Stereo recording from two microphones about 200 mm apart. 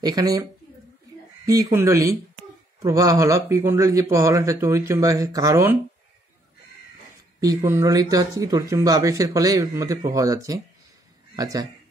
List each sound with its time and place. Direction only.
0.0 s speech: 20° right (ahead or behind)
7.3 s speech: 15° right (ahead or behind)